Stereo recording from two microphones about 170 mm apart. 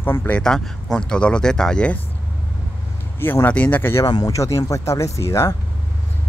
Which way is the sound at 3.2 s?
10° left (ahead or behind).